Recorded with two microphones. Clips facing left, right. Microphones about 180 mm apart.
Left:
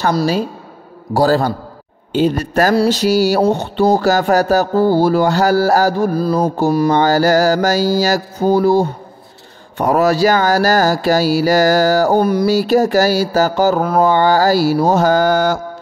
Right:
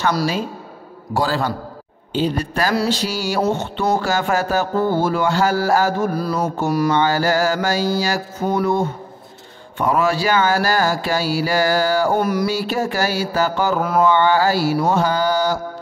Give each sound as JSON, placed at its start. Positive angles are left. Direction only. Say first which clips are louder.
{"t": 1.1, "sound": "music", "louder": "left 7 dB", "side_deg": 40}
{"t": 2.1, "sound": "speech", "louder": "left 6 dB", "side_deg": 45}
{"t": 2.9, "sound": "music", "louder": "left 8 dB", "side_deg": 40}